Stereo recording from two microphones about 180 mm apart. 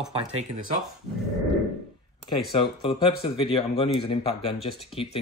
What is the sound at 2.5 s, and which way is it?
Speech, 30° left (ahead or behind).